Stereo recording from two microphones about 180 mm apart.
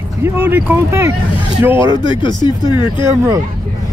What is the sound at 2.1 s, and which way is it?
Speech, 25° left (ahead or behind).